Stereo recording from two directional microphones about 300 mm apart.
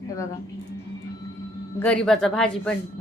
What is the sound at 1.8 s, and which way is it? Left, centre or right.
Speech, centre.